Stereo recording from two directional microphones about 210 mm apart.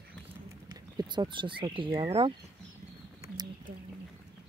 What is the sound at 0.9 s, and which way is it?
Speech, 20° right (ahead or behind).